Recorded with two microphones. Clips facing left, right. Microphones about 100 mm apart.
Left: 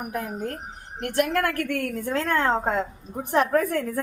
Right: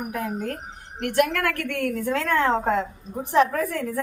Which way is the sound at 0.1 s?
30° left (ahead or behind).